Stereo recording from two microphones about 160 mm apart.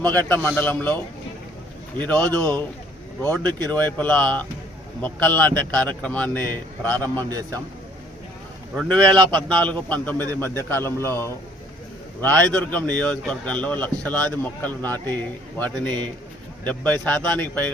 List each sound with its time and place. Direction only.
0.0 s speech: 10° left (ahead or behind)
2.0 s speech: 10° left (ahead or behind)
8.7 s a man's voice: 5° left (ahead or behind)